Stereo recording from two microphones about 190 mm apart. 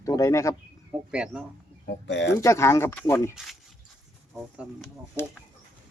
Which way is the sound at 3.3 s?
Centre (ahead or behind).